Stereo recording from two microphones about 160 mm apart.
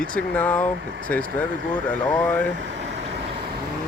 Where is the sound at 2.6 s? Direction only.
90° right.